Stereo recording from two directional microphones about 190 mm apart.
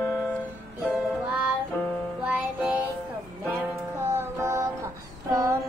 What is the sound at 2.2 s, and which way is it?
Music, 10° right (ahead or behind).